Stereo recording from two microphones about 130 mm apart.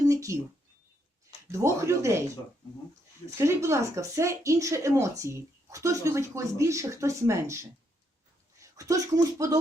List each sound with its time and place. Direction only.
0.0 s a sound: 25° right (ahead or behind)
1.5 s speech: 20° right (ahead or behind)
3.2 s speech: 20° right (ahead or behind)